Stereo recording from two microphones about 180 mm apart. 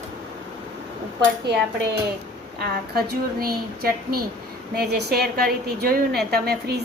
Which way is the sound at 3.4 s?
55° right (ahead or behind).